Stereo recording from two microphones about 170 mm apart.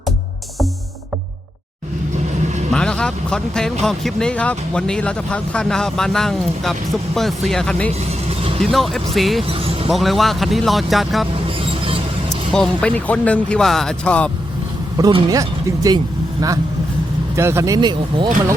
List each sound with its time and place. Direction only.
2.7 s speech: 5° left (ahead or behind)
8.3 s vehicle: 35° right (ahead or behind)
8.6 s speech: centre (ahead or behind)
9.4 s music: 35° right (ahead or behind)
9.9 s speech: centre (ahead or behind)
11.4 s vehicle: 35° right (ahead or behind)
12.5 s speech: 5° left (ahead or behind)
14.9 s speech: 20° right (ahead or behind)
17.3 s speech: 15° right (ahead or behind)